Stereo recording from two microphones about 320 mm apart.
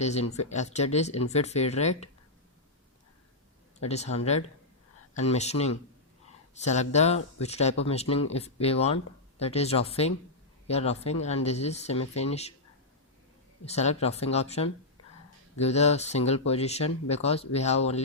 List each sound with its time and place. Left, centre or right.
0.0 s speech: left
3.8 s speech: centre
13.7 s speech: centre